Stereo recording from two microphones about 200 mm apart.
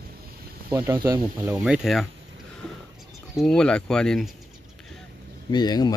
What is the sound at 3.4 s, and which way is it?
Speech, 5° left (ahead or behind).